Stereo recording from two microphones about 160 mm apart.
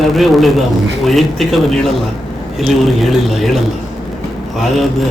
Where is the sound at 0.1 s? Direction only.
Centre (ahead or behind).